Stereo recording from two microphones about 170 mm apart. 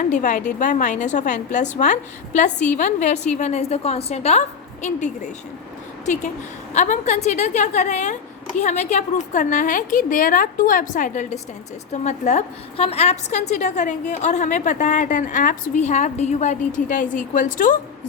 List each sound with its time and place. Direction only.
0.0 s a woman's voice: 45° left (ahead or behind)
6.7 s a woman's voice: 45° left (ahead or behind)